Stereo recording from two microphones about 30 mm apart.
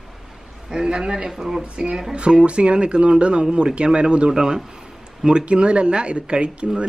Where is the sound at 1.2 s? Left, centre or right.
Centre.